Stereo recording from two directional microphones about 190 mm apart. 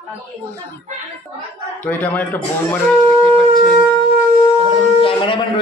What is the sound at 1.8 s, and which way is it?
Speech, 10° left (ahead or behind).